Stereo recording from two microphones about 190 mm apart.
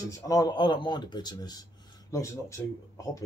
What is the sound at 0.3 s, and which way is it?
Speech, 20° left (ahead or behind).